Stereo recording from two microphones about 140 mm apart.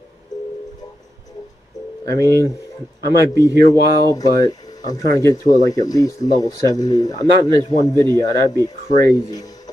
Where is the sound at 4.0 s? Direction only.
25° left (ahead or behind).